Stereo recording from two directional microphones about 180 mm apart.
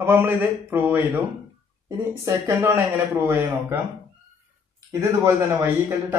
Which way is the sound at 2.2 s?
15° right (ahead or behind).